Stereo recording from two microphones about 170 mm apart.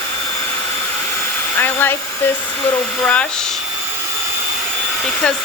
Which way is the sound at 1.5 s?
10° left (ahead or behind).